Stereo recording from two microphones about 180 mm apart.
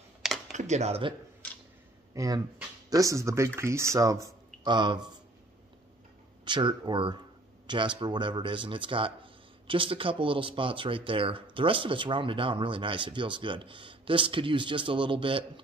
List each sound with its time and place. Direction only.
0.5 s speech: 40° right (ahead or behind)
2.1 s speech: 20° right (ahead or behind)
6.4 s speech: 25° right (ahead or behind)